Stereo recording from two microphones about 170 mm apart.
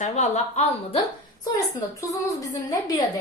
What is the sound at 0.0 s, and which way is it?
Speech, 45° left (ahead or behind).